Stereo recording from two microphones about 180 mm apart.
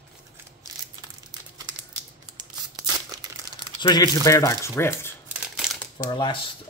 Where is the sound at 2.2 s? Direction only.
20° right (ahead or behind).